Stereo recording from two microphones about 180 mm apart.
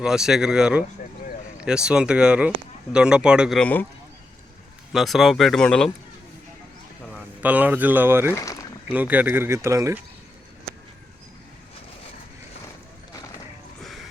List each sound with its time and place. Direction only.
0.0 s speech: 5° right (ahead or behind)
3.6 s a man's voice: 10° left (ahead or behind)
4.9 s speech: centre (ahead or behind)
7.4 s speech: 10° right (ahead or behind)
8.3 s speech: 15° left (ahead or behind)
8.9 s speech: 10° right (ahead or behind)